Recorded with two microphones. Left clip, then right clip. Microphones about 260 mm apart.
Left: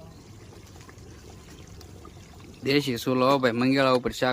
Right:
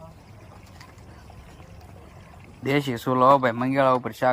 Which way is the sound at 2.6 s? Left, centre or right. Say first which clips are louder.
Even; centre.